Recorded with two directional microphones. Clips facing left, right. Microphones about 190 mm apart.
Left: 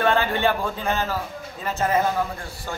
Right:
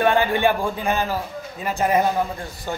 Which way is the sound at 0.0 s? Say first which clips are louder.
Right 3 dB; 15° right (ahead or behind).